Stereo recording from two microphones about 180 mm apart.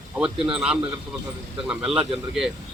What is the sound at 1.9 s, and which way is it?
Speech, 30° right (ahead or behind).